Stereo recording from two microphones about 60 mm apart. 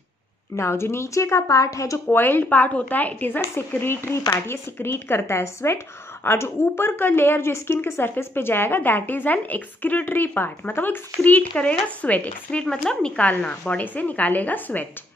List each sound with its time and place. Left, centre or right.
0.6 s a woman's voice: left
2.0 s a woman's voice: left
3.5 s a woman's voice: left
12.6 s speech: centre
13.1 s a woman's voice: left